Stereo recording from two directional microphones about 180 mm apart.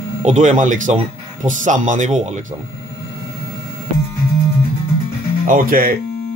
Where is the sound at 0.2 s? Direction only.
40° right (ahead or behind).